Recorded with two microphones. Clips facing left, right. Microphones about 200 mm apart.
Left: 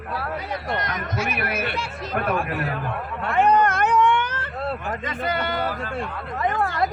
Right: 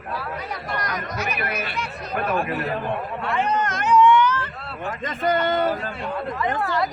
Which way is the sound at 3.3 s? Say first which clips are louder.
Left 5 dB; 55° left (ahead or behind).